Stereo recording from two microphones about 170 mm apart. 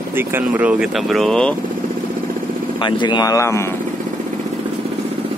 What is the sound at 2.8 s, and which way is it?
Speech, 25° left (ahead or behind).